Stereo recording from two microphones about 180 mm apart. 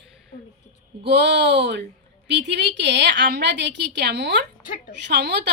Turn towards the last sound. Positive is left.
turn(degrees=-70)  # may be behind; listen again after turning